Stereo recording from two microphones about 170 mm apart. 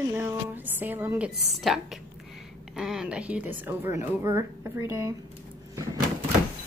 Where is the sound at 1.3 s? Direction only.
Centre (ahead or behind); by 5.2 s 15° right (ahead or behind).